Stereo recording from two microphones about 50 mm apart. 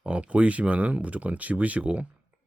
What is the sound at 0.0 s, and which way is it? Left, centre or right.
Speech, right.